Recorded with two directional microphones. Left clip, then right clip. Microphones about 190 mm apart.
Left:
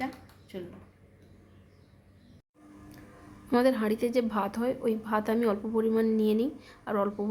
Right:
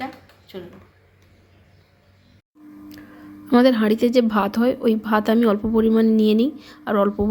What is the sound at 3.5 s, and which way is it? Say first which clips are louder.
A woman's voice: right 9 dB; 20° right (ahead or behind).